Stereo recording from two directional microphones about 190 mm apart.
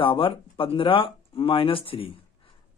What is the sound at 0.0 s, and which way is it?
Speech, 25° left (ahead or behind).